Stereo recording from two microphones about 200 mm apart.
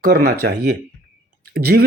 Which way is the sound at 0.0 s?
50° right (ahead or behind).